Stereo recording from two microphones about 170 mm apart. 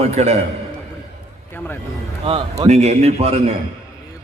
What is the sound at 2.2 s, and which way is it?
A man's voice, 35° right (ahead or behind).